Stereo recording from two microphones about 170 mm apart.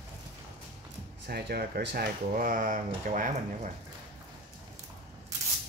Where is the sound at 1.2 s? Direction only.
65° right (ahead or behind); by 3.7 s 50° right (ahead or behind).